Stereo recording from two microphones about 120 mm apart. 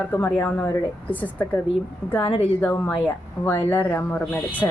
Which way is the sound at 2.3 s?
65° left (ahead or behind).